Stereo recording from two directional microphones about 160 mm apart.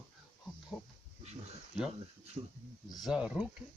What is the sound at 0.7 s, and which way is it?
Speech, 20° left (ahead or behind).